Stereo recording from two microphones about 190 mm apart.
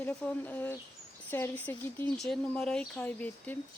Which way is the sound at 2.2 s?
Centre (ahead or behind).